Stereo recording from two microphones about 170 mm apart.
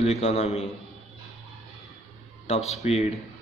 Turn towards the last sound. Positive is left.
turn(degrees=40)  # may be behind; listen again after turning